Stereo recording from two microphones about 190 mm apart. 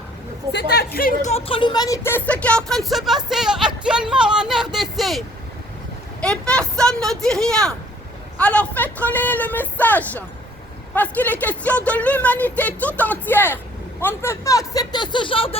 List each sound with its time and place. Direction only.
0.5 s speech: 60° left (ahead or behind)
1.3 s speech: 30° left (ahead or behind); by 3.7 s 5° right (ahead or behind)
3.8 s a sound: 5° right (ahead or behind)
6.2 s speech: 5° left (ahead or behind); by 15.5 s 30° left (ahead or behind)